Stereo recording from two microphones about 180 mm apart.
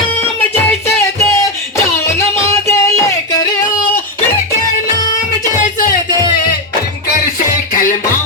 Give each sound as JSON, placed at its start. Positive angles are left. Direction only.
{"t": 0.9, "sound": "music", "side_deg": 15}
{"t": 2.5, "sound": "music", "side_deg": 15}
{"t": 5.6, "sound": "music", "side_deg": 50}
{"t": 7.7, "sound": "music", "side_deg": 50}